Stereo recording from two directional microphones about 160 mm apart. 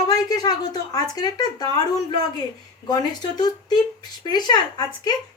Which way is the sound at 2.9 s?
25° left (ahead or behind).